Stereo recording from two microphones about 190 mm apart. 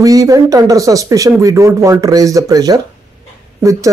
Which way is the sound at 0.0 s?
20° right (ahead or behind).